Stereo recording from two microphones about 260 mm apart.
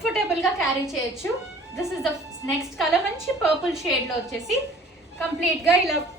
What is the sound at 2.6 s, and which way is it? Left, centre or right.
A woman's voice, centre.